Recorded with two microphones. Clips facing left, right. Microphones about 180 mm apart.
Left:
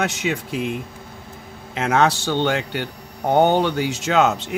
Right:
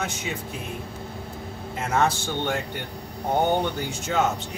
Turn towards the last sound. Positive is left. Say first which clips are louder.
# left 6 dB
turn(degrees=85)